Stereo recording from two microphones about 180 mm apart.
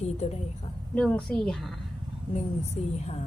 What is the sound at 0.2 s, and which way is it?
Speech, 40° left (ahead or behind).